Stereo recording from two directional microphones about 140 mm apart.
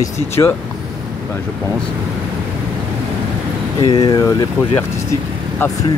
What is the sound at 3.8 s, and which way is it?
Speech, 35° left (ahead or behind).